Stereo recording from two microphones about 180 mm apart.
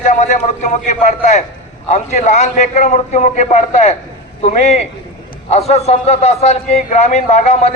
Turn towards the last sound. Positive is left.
turn(degrees=40)  # may be behind; listen again after turning